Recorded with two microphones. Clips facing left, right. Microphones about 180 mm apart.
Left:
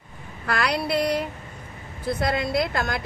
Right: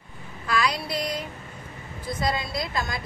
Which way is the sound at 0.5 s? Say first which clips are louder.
Left 2 dB; 65° left (ahead or behind).